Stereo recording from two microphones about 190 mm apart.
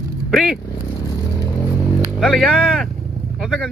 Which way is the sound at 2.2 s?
Centre (ahead or behind).